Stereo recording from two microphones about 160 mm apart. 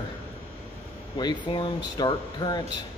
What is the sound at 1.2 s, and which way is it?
Speech, 30° left (ahead or behind).